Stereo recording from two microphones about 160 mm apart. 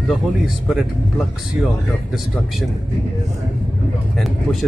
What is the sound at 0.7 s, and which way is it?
Speech, centre (ahead or behind).